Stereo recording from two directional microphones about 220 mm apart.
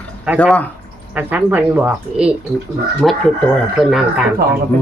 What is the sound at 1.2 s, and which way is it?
Speech, 10° right (ahead or behind).